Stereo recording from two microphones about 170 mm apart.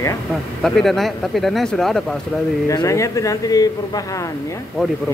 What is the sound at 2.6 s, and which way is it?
Speech, 20° left (ahead or behind).